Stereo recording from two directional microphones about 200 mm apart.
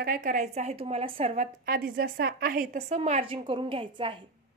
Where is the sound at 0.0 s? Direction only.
45° right (ahead or behind); by 4.2 s 25° right (ahead or behind).